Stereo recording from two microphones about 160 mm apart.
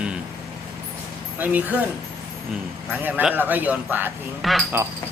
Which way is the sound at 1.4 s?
10° right (ahead or behind).